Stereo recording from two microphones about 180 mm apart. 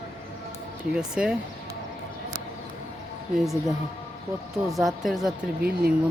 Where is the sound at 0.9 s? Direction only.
5° right (ahead or behind).